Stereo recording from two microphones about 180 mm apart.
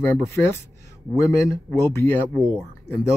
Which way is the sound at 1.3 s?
15° left (ahead or behind).